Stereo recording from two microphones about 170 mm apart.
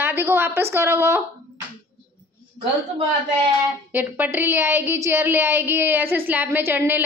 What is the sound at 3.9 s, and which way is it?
A woman's voice, 10° right (ahead or behind).